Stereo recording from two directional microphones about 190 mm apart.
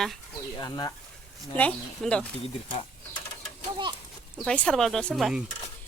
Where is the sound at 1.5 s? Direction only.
5° left (ahead or behind).